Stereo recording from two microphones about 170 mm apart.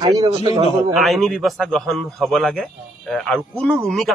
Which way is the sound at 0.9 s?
Centre (ahead or behind).